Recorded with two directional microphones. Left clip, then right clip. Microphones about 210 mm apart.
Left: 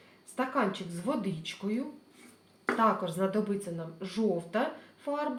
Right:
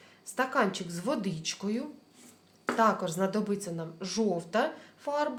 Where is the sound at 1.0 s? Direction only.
30° right (ahead or behind).